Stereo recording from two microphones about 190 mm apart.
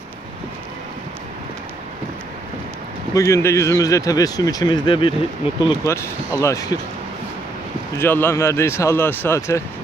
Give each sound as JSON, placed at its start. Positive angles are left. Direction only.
{"t": 3.2, "sound": "speech", "side_deg": 15}
{"t": 5.9, "sound": "speech", "side_deg": 15}
{"t": 8.0, "sound": "speech", "side_deg": 10}